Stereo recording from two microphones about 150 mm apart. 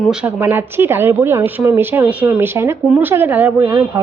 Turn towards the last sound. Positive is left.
turn(degrees=-20)  # may be behind; listen again after turning